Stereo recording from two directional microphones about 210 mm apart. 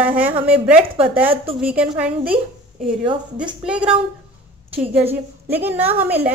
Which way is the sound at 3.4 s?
5° right (ahead or behind).